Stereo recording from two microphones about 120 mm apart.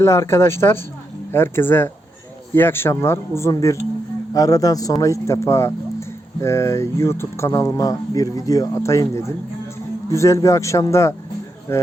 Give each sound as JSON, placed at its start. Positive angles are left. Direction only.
{"t": 0.0, "sound": "speech", "side_deg": 25}